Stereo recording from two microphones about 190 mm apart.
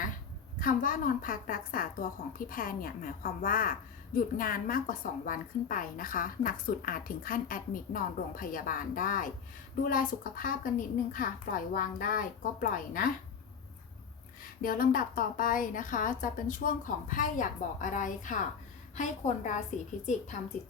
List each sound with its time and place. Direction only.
0.6 s a woman's voice: 45° left (ahead or behind)
14.6 s a woman's voice: 50° left (ahead or behind)